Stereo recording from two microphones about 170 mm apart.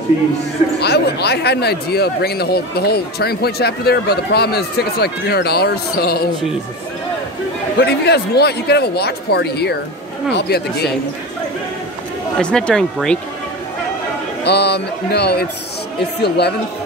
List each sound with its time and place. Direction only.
0.7 s speech: 75° left (ahead or behind)
7.8 s speech: 75° left (ahead or behind)
12.4 s speech: 5° left (ahead or behind)
14.4 s speech: 75° left (ahead or behind)